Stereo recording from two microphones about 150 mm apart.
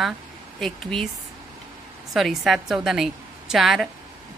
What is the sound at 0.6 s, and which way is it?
Speech, 5° left (ahead or behind).